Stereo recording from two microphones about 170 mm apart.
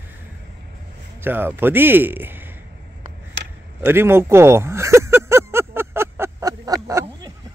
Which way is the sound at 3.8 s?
15° right (ahead or behind).